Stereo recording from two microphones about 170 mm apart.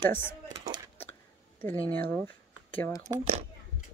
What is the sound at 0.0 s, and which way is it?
Speech, 15° left (ahead or behind).